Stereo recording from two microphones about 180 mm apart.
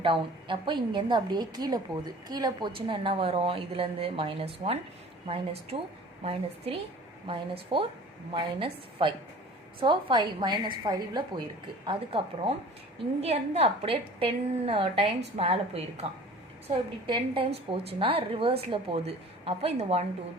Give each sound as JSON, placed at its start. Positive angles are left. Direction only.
{"t": 0.0, "sound": "a woman's voice", "side_deg": -30}
{"t": 7.3, "sound": "a woman's voice", "side_deg": -30}